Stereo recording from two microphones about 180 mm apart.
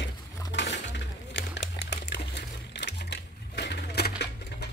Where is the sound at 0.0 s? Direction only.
75° left (ahead or behind).